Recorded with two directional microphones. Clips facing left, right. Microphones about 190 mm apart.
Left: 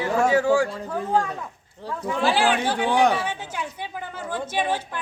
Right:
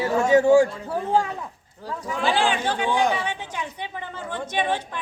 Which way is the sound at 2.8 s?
70° left (ahead or behind).